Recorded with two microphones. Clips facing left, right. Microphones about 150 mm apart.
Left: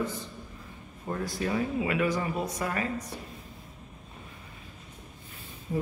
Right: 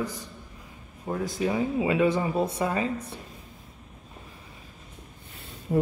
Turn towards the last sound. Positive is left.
turn(degrees=-70)  # may be behind; listen again after turning